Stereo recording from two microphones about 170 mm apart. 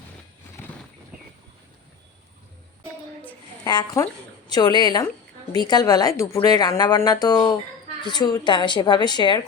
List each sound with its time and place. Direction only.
3.6 s a woman's voice: 25° left (ahead or behind)